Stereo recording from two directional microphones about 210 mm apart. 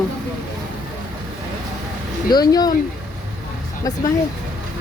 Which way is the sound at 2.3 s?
20° left (ahead or behind).